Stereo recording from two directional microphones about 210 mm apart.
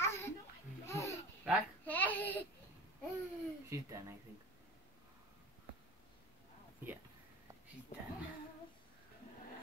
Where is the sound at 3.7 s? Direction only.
15° right (ahead or behind).